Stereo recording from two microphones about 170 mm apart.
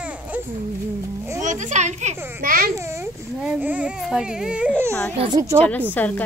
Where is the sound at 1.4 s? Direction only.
45° right (ahead or behind).